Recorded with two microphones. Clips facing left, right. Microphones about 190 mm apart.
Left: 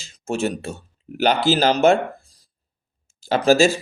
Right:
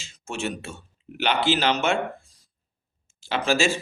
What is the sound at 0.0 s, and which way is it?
Speech, 40° left (ahead or behind).